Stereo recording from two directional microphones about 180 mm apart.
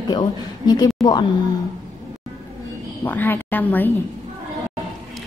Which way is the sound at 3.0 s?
10° left (ahead or behind).